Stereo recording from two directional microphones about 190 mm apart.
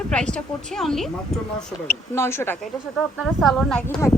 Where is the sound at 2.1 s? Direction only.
10° left (ahead or behind).